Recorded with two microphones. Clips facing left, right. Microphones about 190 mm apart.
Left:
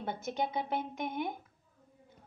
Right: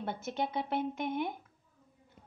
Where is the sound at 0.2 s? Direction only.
Centre (ahead or behind).